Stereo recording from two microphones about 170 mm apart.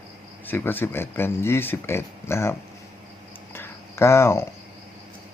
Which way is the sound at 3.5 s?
15° left (ahead or behind).